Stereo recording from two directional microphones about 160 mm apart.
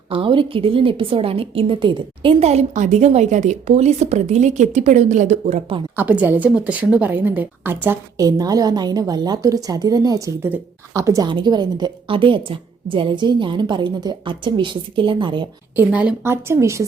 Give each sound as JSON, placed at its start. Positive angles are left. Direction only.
{"t": 0.1, "sound": "a woman's voice", "side_deg": -35}
{"t": 6.0, "sound": "a woman's voice", "side_deg": -10}
{"t": 15.7, "sound": "speech", "side_deg": -10}